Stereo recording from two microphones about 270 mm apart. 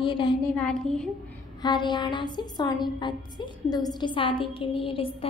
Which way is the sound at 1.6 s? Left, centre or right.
Centre.